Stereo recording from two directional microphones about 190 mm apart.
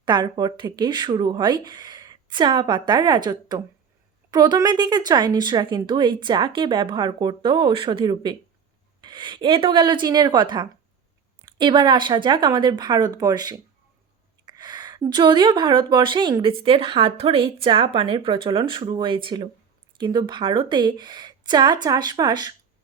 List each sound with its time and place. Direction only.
0.0 s a woman's voice: 25° right (ahead or behind)